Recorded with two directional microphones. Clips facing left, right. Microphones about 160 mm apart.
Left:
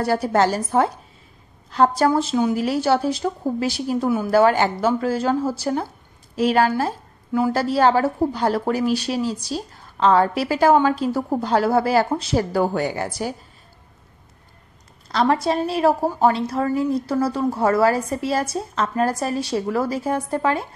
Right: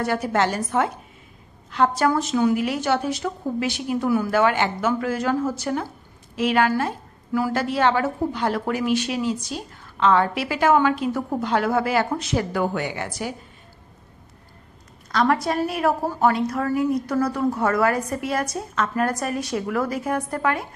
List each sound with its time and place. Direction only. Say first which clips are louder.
0.0 s a woman's voice: left 3 dB; 35° left (ahead or behind)
15.0 s a woman's voice: left 2 dB; 30° left (ahead or behind)